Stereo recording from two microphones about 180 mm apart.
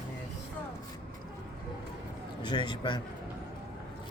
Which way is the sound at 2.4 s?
25° left (ahead or behind).